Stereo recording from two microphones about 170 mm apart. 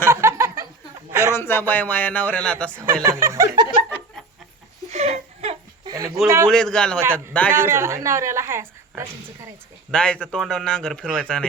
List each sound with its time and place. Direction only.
0.1 s a sound: 15° right (ahead or behind)
1.2 s speech: 15° left (ahead or behind)
2.8 s a woman's voice: 15° right (ahead or behind)
3.8 s chuckle: 10° left (ahead or behind)
4.9 s a sound: 40° right (ahead or behind)
6.2 s a woman's voice: 15° right (ahead or behind)
6.5 s speech: 5° left (ahead or behind)
7.5 s a woman's voice: 15° right (ahead or behind)
9.9 s speech: 5° left (ahead or behind)